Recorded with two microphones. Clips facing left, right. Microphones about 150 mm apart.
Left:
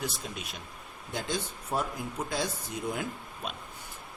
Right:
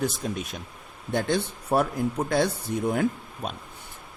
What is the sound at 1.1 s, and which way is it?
A man's voice, 65° right (ahead or behind).